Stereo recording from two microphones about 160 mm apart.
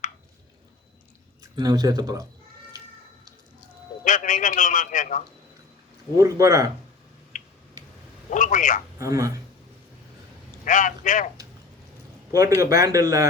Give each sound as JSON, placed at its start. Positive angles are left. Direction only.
{"t": 1.5, "sound": "a man's voice", "side_deg": -25}
{"t": 4.0, "sound": "a man's voice", "side_deg": 55}
{"t": 6.1, "sound": "a man's voice", "side_deg": -20}
{"t": 7.3, "sound": "a sound", "side_deg": 55}
{"t": 8.3, "sound": "a man's voice", "side_deg": 50}
{"t": 9.0, "sound": "a man's voice", "side_deg": -20}
{"t": 10.7, "sound": "a man's voice", "side_deg": 55}
{"t": 12.5, "sound": "a man's voice", "side_deg": -20}